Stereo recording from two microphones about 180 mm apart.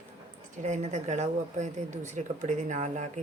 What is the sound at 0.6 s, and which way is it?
Speech, 40° right (ahead or behind).